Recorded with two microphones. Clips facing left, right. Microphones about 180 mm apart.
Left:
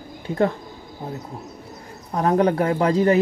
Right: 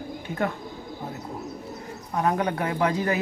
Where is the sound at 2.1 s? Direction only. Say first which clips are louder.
Left 6 dB; 35° left (ahead or behind).